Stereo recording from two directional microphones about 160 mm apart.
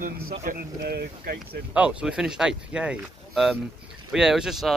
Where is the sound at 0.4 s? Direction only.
70° right (ahead or behind).